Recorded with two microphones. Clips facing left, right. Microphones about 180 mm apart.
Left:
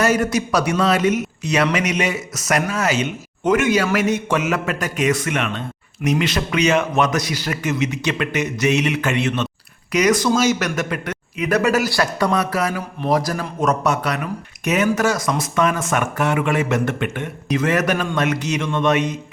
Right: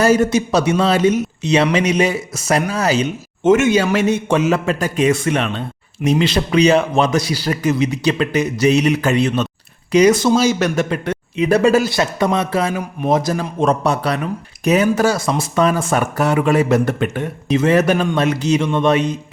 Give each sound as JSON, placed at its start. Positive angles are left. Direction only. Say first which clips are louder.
{"t": 0.0, "sound": "a man's voice", "louder": "right 4 dB", "side_deg": -30}